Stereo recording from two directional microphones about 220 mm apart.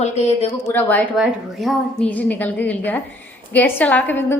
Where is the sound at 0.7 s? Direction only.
10° left (ahead or behind).